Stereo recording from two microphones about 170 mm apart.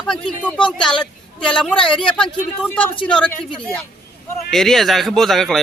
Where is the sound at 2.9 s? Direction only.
30° left (ahead or behind).